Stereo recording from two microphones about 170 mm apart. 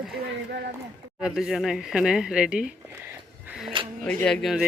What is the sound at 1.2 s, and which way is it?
Speech, centre (ahead or behind).